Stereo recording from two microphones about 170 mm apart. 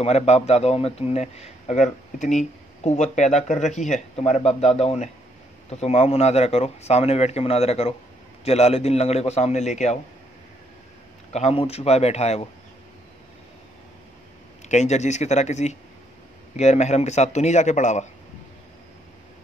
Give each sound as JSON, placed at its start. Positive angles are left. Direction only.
{"t": 0.0, "sound": "a man's voice", "side_deg": 40}
{"t": 11.3, "sound": "a man's voice", "side_deg": 40}
{"t": 14.7, "sound": "a man's voice", "side_deg": 45}